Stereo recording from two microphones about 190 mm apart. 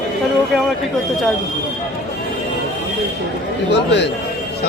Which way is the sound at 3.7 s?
65° left (ahead or behind).